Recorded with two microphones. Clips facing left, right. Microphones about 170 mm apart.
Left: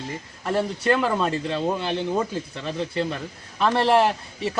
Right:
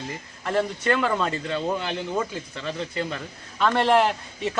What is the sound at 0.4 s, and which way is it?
Speech, 10° left (ahead or behind).